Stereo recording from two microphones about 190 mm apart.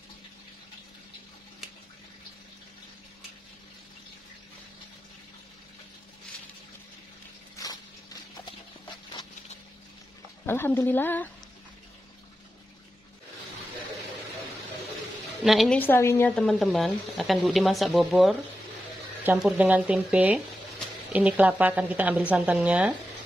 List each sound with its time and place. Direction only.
7.5 s a sound: 20° left (ahead or behind)
10.4 s speech: 10° left (ahead or behind)
15.4 s speech: centre (ahead or behind)